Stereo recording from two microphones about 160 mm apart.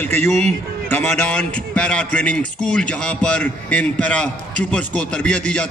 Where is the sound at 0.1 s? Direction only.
45° right (ahead or behind).